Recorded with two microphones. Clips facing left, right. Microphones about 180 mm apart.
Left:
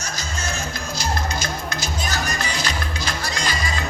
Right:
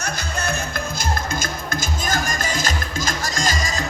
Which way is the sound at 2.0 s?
50° right (ahead or behind).